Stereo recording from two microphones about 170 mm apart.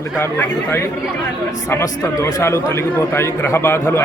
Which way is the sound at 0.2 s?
15° left (ahead or behind).